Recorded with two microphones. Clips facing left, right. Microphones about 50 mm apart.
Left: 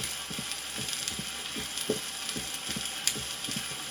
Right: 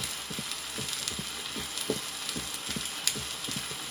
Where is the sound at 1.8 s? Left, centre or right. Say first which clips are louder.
Left 1 dB; left.